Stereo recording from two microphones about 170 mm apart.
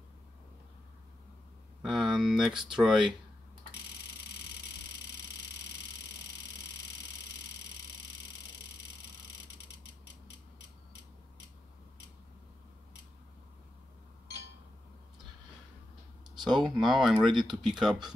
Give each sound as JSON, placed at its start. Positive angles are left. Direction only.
{"t": 1.8, "sound": "speech", "side_deg": 0}
{"t": 16.3, "sound": "a sound", "side_deg": -25}
{"t": 16.6, "sound": "speech", "side_deg": 0}